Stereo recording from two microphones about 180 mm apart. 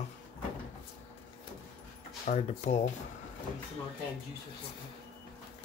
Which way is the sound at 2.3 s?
40° left (ahead or behind).